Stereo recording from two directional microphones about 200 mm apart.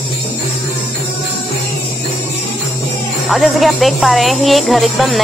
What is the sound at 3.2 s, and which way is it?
Speech, centre (ahead or behind).